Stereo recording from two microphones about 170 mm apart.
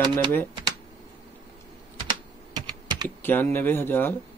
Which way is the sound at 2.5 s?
25° right (ahead or behind).